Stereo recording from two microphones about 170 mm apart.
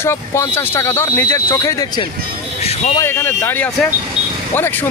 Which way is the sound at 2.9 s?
15° left (ahead or behind).